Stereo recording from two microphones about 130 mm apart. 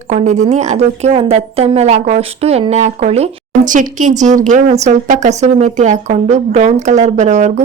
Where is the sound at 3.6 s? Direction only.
85° right.